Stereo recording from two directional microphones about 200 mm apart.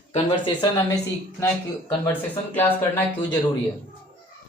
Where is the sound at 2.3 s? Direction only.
10° left (ahead or behind).